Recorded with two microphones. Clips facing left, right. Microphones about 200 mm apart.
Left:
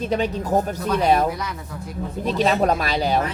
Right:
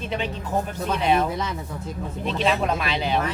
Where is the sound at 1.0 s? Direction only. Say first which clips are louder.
Left 3 dB; 40° left (ahead or behind).